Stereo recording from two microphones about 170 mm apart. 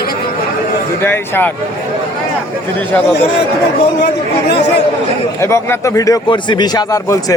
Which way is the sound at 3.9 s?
80° left.